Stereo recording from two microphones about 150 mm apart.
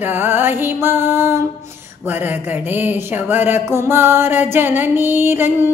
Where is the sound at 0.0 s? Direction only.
15° right (ahead or behind).